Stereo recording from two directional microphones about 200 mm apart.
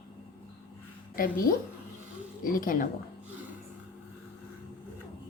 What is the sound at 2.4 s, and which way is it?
Speech, 45° left (ahead or behind).